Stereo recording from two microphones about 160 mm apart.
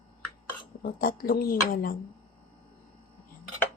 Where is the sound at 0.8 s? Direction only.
65° left (ahead or behind).